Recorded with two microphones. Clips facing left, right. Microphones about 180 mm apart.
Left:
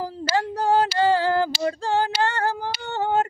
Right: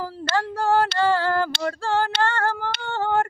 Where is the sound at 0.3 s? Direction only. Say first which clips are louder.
Even; 15° left (ahead or behind).